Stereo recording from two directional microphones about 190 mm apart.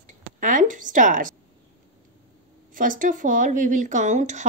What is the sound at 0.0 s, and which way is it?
Speech, 45° right (ahead or behind).